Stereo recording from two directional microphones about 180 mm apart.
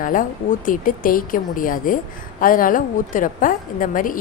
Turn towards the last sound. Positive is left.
turn(degrees=50)  # may be behind; listen again after turning